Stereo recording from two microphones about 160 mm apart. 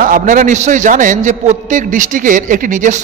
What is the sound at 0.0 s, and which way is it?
A man's voice, 55° right (ahead or behind).